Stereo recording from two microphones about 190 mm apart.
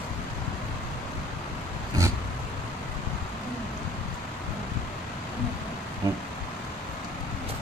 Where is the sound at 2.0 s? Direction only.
15° right (ahead or behind).